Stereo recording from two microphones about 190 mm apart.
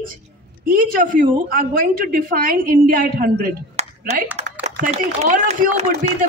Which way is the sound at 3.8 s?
40° right (ahead or behind).